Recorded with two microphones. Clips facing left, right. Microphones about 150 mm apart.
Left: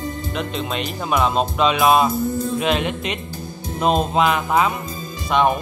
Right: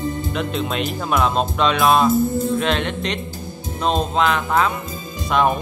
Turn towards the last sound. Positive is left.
turn(degrees=0)  # may be behind; listen again after turning